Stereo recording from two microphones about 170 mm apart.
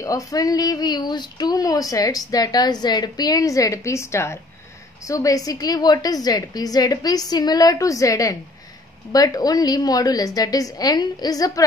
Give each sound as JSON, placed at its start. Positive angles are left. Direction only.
{"t": 0.0, "sound": "speech", "side_deg": 20}